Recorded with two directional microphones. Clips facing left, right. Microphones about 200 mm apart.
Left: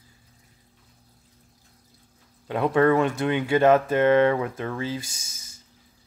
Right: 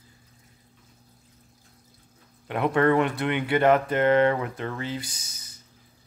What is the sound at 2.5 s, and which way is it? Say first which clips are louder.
Speech: left 2 dB; 15° left (ahead or behind).